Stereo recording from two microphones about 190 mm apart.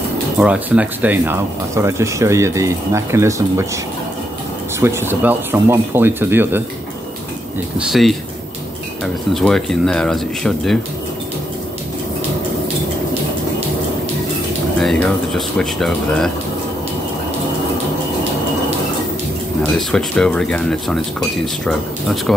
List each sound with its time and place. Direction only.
0.4 s speech: 5° right (ahead or behind)
4.7 s speech: 10° right (ahead or behind)
7.8 s speech: centre (ahead or behind)
14.8 s speech: centre (ahead or behind)
19.6 s speech: 5° left (ahead or behind)